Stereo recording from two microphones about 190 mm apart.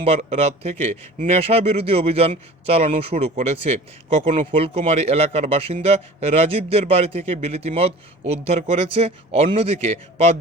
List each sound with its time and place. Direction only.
0.0 s speech: 35° right (ahead or behind)